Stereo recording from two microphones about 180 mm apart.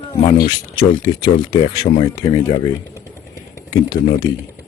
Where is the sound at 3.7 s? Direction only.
20° left (ahead or behind).